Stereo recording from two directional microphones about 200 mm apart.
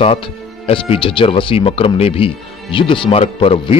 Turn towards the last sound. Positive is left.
turn(degrees=25)  # may be behind; listen again after turning